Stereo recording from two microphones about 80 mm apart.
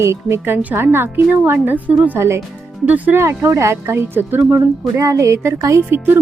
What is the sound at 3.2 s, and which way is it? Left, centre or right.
A woman's voice, right.